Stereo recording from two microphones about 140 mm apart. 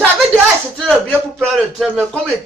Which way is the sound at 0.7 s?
5° left (ahead or behind).